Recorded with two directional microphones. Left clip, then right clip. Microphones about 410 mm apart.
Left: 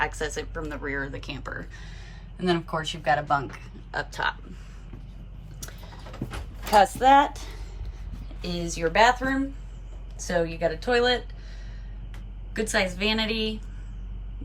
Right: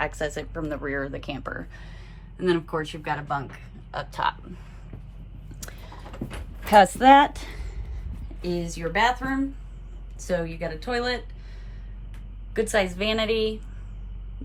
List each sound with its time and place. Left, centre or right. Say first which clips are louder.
0.0 s speech: even; centre
3.9 s a woman's voice: right 1 dB; centre
5.5 s keys jangling: right 1 dB; centre
6.7 s a woman's voice: right 3 dB; centre
8.4 s speech: left 1 dB; centre
12.5 s a woman's voice: right 2 dB; centre